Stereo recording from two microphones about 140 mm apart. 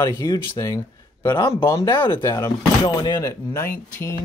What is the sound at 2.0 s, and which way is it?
Speech, 30° left (ahead or behind).